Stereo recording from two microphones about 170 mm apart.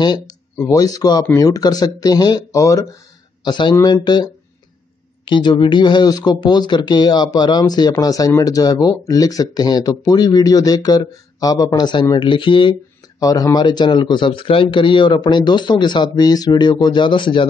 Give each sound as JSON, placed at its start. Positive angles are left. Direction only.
{"t": 0.6, "sound": "speech", "side_deg": 20}